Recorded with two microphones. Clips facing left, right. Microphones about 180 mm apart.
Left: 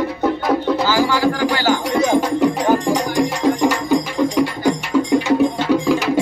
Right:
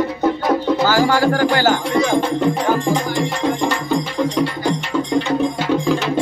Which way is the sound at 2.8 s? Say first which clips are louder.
Left 1 dB; 40° left (ahead or behind).